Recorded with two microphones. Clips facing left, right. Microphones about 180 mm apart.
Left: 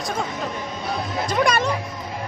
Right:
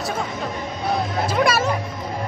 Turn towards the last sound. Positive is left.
turn(degrees=-5)  # may be behind; listen again after turning